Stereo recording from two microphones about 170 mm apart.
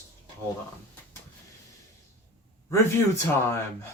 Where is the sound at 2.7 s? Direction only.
15° left (ahead or behind).